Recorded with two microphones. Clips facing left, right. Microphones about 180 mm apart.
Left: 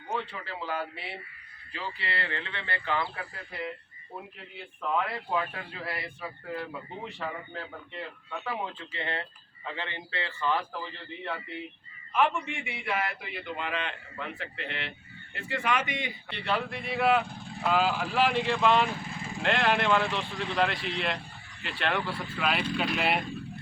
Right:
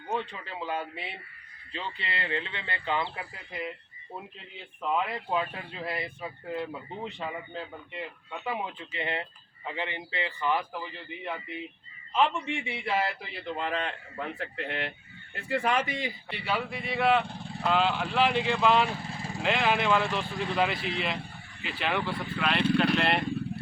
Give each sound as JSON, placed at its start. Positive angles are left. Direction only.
{"t": 0.1, "sound": "a man's voice", "side_deg": -20}
{"t": 15.4, "sound": "a man's voice", "side_deg": -35}
{"t": 16.3, "sound": "speech", "side_deg": -5}